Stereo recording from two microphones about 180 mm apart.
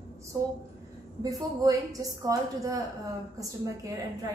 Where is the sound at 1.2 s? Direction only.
20° right (ahead or behind).